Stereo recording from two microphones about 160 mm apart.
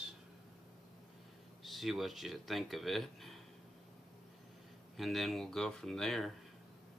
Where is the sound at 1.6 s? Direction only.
Centre (ahead or behind).